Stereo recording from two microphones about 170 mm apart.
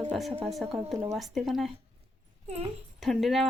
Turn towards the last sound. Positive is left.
turn(degrees=0)  # may be behind; listen again after turning